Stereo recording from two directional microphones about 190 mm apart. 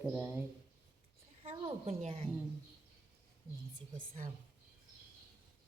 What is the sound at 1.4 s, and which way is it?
Speech, 30° right (ahead or behind).